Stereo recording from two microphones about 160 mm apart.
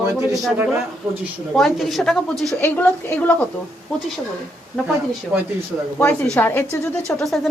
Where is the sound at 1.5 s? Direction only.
Centre (ahead or behind).